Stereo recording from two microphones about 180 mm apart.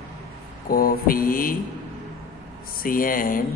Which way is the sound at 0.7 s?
55° left (ahead or behind).